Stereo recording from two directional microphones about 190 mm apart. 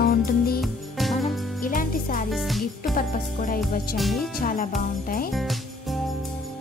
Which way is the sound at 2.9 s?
50° left (ahead or behind).